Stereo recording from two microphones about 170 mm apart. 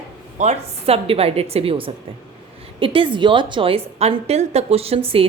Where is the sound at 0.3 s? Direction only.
40° right (ahead or behind).